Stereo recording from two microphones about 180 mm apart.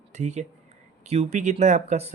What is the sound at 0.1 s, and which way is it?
Speech, 40° right (ahead or behind).